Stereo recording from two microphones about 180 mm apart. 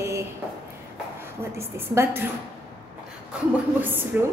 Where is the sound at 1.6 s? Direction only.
15° right (ahead or behind).